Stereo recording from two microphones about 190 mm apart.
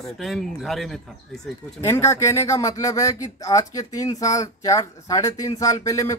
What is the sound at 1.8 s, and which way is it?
Speech, 15° left (ahead or behind).